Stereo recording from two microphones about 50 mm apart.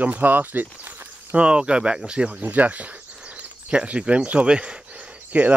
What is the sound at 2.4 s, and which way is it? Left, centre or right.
Speech, right.